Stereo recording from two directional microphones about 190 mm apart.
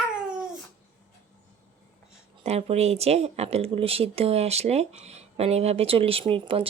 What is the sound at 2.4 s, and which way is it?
Speech, 35° right (ahead or behind).